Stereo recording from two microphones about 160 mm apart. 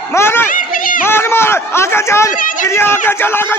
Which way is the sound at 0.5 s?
60° left (ahead or behind).